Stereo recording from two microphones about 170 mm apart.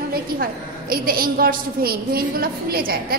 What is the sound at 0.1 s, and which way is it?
A woman's voice, 60° right (ahead or behind).